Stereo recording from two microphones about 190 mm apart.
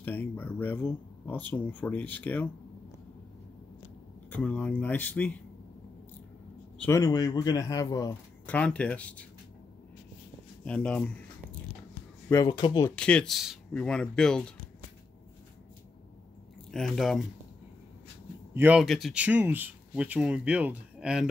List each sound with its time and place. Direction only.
0.0 s speech: 10° left (ahead or behind)
4.3 s speech: 10° left (ahead or behind)
6.8 s a man's voice: 15° left (ahead or behind)
8.5 s speech: 5° left (ahead or behind)
10.6 s speech: 5° left (ahead or behind)
12.3 s a man's voice: 20° left (ahead or behind)
12.9 s speech: 5° left (ahead or behind)
16.7 s speech: 5° left (ahead or behind)
18.5 s speech: 10° right (ahead or behind)